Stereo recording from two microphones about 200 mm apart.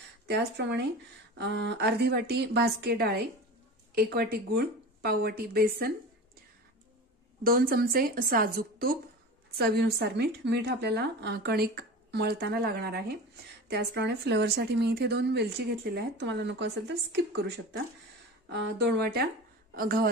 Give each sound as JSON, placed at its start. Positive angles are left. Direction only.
{"t": 0.3, "sound": "a woman's voice", "side_deg": -55}
{"t": 7.4, "sound": "a woman's voice", "side_deg": -45}